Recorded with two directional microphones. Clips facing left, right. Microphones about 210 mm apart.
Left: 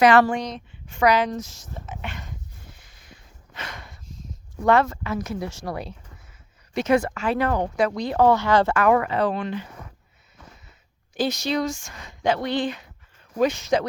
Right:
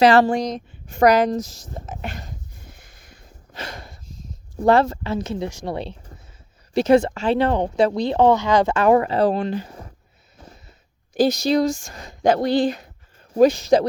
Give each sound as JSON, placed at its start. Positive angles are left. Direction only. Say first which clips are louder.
{"t": 0.0, "sound": "a woman's voice", "louder": "right 2 dB", "side_deg": -30}
{"t": 2.7, "sound": "a sound", "louder": "right 2 dB", "side_deg": -45}
{"t": 4.6, "sound": "speech", "louder": "right 3 dB", "side_deg": -30}
{"t": 5.5, "sound": "speech", "louder": "right 3 dB", "side_deg": -15}
{"t": 5.7, "sound": "speech", "louder": "right 4 dB", "side_deg": -30}
{"t": 8.8, "sound": "a woman's voice", "louder": "right 4 dB", "side_deg": -30}
{"t": 10.3, "sound": "a sound", "louder": "right 4 dB", "side_deg": -35}
{"t": 11.1, "sound": "a woman's voice", "louder": "right 6 dB", "side_deg": -40}